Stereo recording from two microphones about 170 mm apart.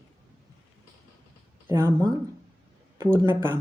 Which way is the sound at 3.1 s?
15° right (ahead or behind).